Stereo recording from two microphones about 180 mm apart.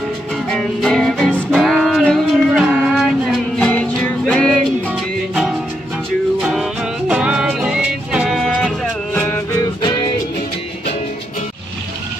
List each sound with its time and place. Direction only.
0.5 s music: 5° left (ahead or behind)
6.4 s music: centre (ahead or behind)
9.8 s music: 25° left (ahead or behind)